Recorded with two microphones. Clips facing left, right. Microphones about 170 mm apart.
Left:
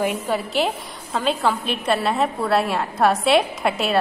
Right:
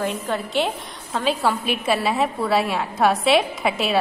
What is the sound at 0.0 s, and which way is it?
A woman's voice, 5° left (ahead or behind).